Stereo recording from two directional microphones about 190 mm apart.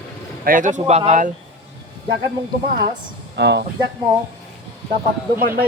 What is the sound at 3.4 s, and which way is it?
Speech, 65° right (ahead or behind).